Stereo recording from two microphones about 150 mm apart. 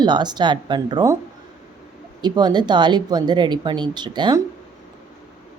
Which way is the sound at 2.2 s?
30° right (ahead or behind).